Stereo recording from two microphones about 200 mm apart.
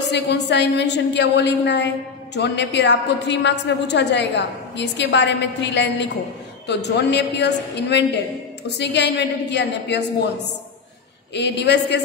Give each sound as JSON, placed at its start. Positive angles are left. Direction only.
{"t": 0.1, "sound": "a woman's voice", "side_deg": 60}
{"t": 11.3, "sound": "a woman's voice", "side_deg": 60}